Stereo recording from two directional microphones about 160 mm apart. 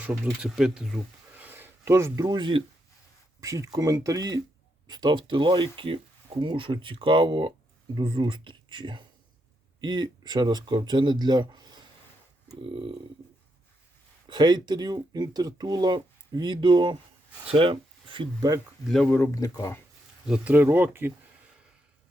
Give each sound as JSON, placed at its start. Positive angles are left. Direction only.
{"t": 0.0, "sound": "speech", "side_deg": -10}
{"t": 2.2, "sound": "speech", "side_deg": -30}
{"t": 3.4, "sound": "speech", "side_deg": -20}
{"t": 14.3, "sound": "speech", "side_deg": -30}
{"t": 19.1, "sound": "speech", "side_deg": 15}
{"t": 20.2, "sound": "speech", "side_deg": -5}